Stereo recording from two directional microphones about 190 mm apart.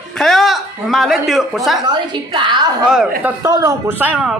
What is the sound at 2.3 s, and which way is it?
Speech, 25° right (ahead or behind).